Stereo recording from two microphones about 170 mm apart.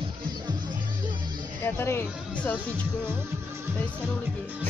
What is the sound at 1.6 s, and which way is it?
Speech, 15° left (ahead or behind).